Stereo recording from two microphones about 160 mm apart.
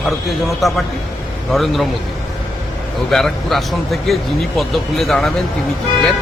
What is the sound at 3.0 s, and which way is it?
A man's voice, centre (ahead or behind).